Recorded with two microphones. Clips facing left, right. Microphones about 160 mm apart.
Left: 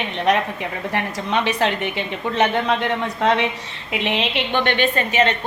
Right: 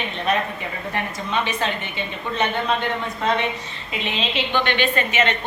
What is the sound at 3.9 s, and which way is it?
A woman's voice, 70° left (ahead or behind).